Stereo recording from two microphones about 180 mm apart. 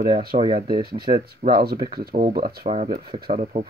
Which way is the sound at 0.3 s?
35° right (ahead or behind).